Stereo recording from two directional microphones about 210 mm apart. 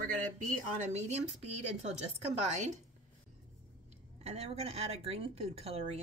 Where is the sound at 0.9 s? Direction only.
30° right (ahead or behind).